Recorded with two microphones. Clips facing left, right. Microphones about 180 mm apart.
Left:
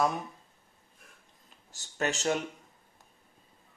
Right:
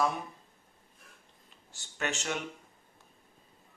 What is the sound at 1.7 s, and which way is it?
Speech, 40° left (ahead or behind).